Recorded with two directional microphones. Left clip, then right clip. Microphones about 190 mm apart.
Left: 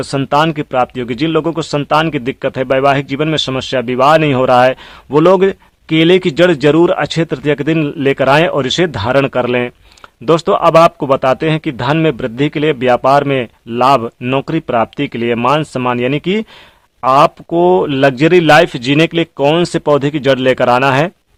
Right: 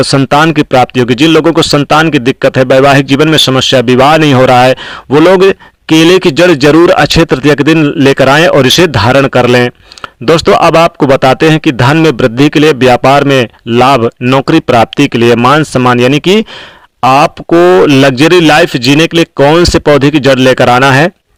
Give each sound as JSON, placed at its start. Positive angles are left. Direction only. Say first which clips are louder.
{"t": 0.0, "sound": "speech", "louder": "right 7 dB", "side_deg": -25}